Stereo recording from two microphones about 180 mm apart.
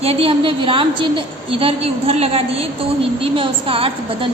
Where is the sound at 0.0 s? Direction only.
30° right (ahead or behind).